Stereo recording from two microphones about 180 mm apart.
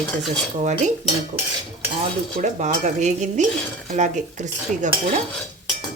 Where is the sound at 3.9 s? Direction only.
40° right (ahead or behind).